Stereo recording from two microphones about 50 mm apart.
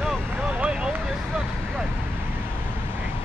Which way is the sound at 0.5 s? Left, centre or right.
Centre.